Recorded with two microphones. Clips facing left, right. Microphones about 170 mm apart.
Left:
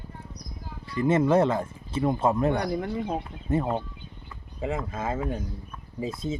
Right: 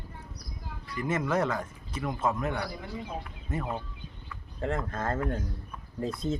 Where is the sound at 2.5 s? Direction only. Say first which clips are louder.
Left 8 dB; 55° left (ahead or behind).